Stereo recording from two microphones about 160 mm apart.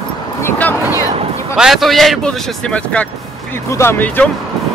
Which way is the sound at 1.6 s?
Centre (ahead or behind).